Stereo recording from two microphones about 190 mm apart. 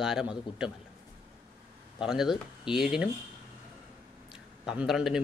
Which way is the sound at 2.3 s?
25° left (ahead or behind).